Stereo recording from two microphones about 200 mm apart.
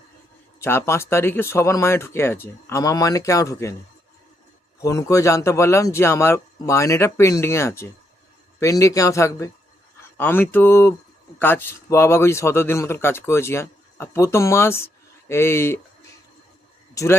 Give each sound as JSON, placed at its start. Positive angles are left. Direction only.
{"t": 0.6, "sound": "a man's voice", "side_deg": 10}
{"t": 4.8, "sound": "a man's voice", "side_deg": 15}
{"t": 16.9, "sound": "speech", "side_deg": 15}